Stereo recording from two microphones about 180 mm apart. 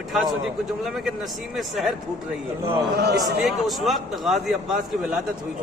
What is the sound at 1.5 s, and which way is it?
Speech, centre (ahead or behind).